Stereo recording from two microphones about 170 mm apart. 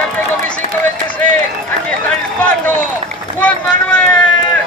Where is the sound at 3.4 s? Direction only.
5° left (ahead or behind).